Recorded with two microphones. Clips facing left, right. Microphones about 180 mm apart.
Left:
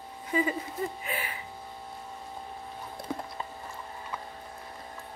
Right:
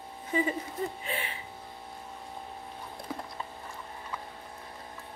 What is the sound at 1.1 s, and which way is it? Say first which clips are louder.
Speech: even; 30° right (ahead or behind).